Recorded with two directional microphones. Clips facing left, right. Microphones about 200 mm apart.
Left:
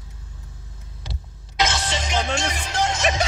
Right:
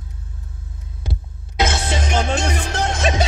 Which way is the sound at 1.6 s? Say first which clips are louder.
Right 3 dB; 55° right (ahead or behind).